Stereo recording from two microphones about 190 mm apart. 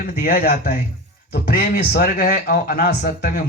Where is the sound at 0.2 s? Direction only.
50° left (ahead or behind).